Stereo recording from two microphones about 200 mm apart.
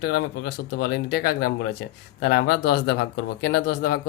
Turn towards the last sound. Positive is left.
turn(degrees=50)  # may be behind; listen again after turning